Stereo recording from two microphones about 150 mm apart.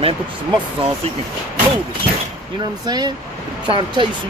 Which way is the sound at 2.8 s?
30° right (ahead or behind).